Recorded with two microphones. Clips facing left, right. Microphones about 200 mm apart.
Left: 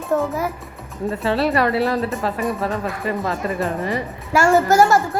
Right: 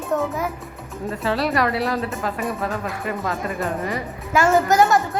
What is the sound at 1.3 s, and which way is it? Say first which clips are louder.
Speech: left 2 dB; 30° left (ahead or behind).